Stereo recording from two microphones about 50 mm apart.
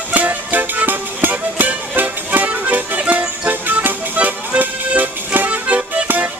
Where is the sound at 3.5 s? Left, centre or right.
Right.